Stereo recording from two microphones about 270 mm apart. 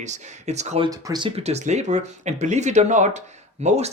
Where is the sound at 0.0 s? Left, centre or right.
Right.